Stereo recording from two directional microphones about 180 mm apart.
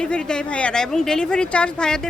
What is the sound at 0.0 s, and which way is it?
Speech, 5° left (ahead or behind).